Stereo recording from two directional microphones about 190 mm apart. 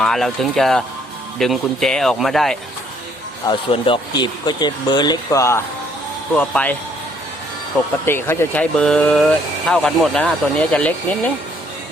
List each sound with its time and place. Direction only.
0.0 s speech: centre (ahead or behind)
3.4 s speech: 25° left (ahead or behind); by 6.7 s 5° left (ahead or behind)
8.0 s speech: 10° left (ahead or behind)